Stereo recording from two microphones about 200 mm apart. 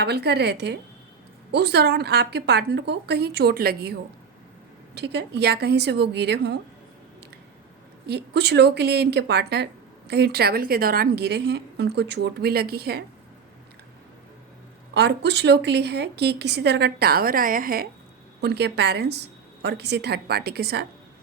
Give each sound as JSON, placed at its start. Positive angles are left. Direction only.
{"t": 0.0, "sound": "a woman's voice", "side_deg": -55}
{"t": 4.9, "sound": "a woman's voice", "side_deg": -55}
{"t": 8.0, "sound": "a woman's voice", "side_deg": -55}
{"t": 14.9, "sound": "a woman's voice", "side_deg": -55}